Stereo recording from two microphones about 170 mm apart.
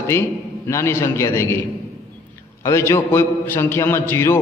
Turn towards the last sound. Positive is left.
turn(degrees=15)  # may be behind; listen again after turning